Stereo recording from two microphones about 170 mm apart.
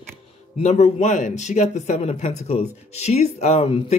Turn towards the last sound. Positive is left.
turn(degrees=35)  # may be behind; listen again after turning